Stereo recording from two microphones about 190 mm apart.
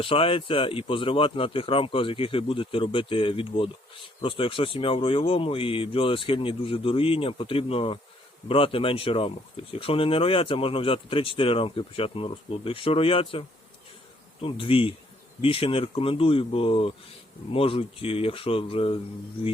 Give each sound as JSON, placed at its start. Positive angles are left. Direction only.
{"t": 0.0, "sound": "speech", "side_deg": 30}
{"t": 14.4, "sound": "speech", "side_deg": 30}